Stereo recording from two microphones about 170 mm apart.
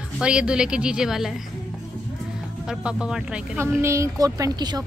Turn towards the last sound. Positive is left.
turn(degrees=-25)  # may be behind; listen again after turning